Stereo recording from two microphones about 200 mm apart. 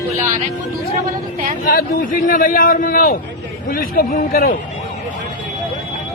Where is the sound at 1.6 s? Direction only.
45° left (ahead or behind).